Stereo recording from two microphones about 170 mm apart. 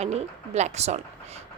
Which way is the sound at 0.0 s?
40° right (ahead or behind).